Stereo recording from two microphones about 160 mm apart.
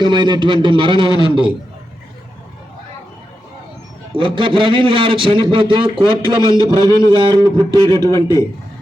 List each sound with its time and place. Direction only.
0.0 s a man's voice: 30° right (ahead or behind)
4.1 s a man's voice: 30° right (ahead or behind)
6.7 s a man's voice: 20° left (ahead or behind)
7.1 s speech: 30° right (ahead or behind)